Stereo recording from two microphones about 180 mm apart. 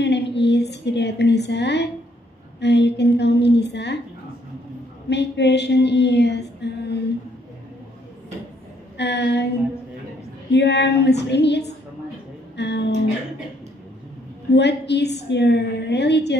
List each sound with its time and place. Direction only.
0.0 s a sound: 75° left (ahead or behind)
2.6 s a woman's voice: 70° left (ahead or behind)
5.1 s a sound: 70° left (ahead or behind)
8.9 s a woman's voice: 70° left (ahead or behind)
10.5 s a woman's voice: 70° left (ahead or behind)
12.5 s music: 70° left (ahead or behind)
14.5 s a woman's voice: 70° left (ahead or behind)